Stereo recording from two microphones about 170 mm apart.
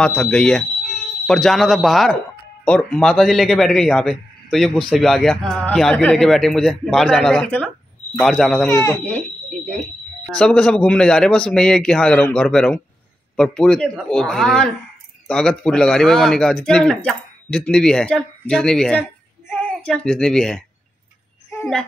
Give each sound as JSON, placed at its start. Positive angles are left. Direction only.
{"t": 0.0, "sound": "a man's voice", "side_deg": 5}
{"t": 8.6, "sound": "speech", "side_deg": 15}
{"t": 9.7, "sound": "a man's voice", "side_deg": 5}